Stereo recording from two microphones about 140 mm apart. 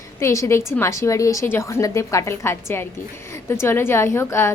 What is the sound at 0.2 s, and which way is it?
A woman's voice, 20° left (ahead or behind).